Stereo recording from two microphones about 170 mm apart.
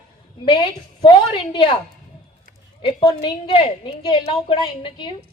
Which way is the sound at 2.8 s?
30° left (ahead or behind).